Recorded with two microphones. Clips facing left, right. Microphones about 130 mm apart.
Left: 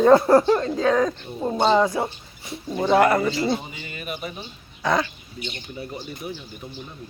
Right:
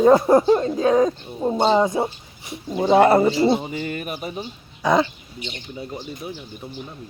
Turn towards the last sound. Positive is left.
turn(degrees=-20)  # may be behind; listen again after turning